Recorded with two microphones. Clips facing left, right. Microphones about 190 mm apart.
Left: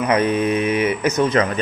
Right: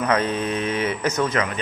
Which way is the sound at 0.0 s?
15° left (ahead or behind).